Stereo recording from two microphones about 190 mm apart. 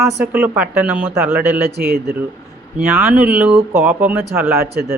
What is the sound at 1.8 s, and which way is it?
Speech, 55° right (ahead or behind).